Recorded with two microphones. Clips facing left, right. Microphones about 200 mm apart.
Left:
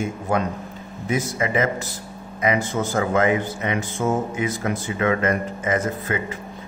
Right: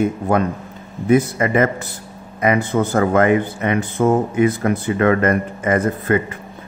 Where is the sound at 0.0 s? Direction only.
55° right (ahead or behind).